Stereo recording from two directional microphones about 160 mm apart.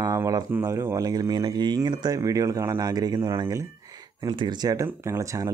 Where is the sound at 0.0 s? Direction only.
20° right (ahead or behind).